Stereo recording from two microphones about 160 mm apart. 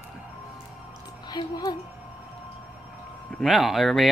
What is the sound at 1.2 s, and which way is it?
Speech, 25° left (ahead or behind).